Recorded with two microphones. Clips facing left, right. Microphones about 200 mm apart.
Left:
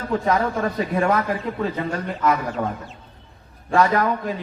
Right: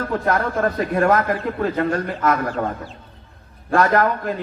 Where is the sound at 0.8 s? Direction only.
60° right (ahead or behind).